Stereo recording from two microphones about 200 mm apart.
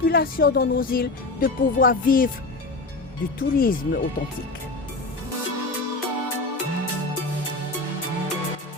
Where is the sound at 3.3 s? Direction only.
45° left (ahead or behind).